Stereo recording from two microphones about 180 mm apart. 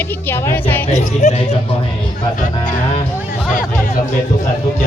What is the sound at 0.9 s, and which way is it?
Speech, 40° left (ahead or behind).